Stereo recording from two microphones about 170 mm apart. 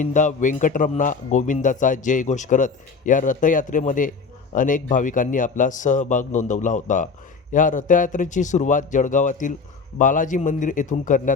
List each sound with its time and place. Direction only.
0.0 s a man's voice: 45° left (ahead or behind)